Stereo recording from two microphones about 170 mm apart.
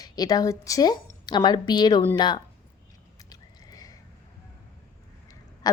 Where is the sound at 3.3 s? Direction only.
25° left (ahead or behind).